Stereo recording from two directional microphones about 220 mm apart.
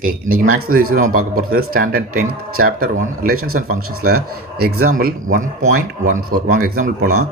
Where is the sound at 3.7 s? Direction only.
85° right.